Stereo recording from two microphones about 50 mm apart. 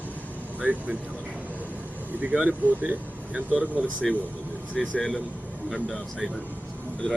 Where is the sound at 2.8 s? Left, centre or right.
Right.